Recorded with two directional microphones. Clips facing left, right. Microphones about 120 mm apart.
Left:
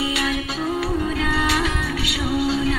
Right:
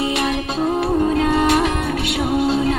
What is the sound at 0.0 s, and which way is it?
Music, 45° right (ahead or behind).